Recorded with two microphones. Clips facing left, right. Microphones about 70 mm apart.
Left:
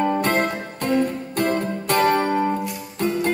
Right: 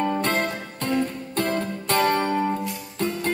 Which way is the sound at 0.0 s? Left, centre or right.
Centre.